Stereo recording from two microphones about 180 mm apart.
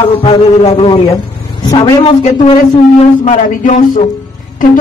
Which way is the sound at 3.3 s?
45° left (ahead or behind).